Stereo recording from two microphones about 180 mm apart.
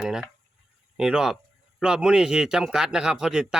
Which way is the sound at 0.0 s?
5° right (ahead or behind).